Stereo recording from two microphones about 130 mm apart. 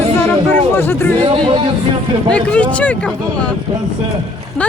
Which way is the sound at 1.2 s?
40° right (ahead or behind).